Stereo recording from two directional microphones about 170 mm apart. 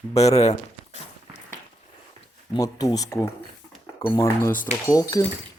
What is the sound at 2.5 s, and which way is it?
Speech, 20° left (ahead or behind).